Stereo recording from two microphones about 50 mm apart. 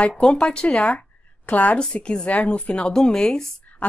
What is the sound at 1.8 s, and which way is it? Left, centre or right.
Speech, centre.